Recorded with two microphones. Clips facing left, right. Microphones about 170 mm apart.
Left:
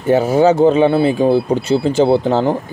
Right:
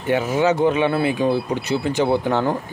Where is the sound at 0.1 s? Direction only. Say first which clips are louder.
Left 7 dB; 35° left (ahead or behind).